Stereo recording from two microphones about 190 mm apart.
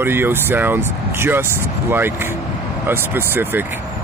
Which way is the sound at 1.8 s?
10° right (ahead or behind).